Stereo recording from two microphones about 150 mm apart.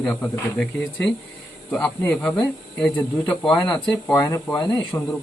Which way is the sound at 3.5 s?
25° left (ahead or behind).